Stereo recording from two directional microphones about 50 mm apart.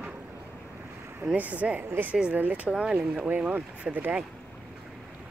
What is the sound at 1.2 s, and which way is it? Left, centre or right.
Speech, right.